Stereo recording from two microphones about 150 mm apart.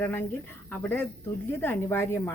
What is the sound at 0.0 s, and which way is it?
Speech, 15° left (ahead or behind).